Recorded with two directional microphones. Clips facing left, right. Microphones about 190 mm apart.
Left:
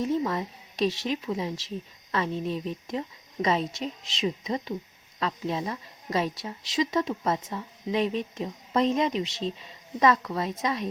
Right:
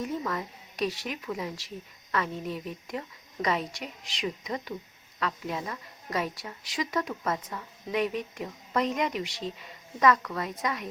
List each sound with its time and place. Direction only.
0.0 s a woman's voice: 25° left (ahead or behind)